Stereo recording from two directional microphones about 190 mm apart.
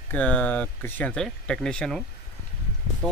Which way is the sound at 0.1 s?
10° left (ahead or behind).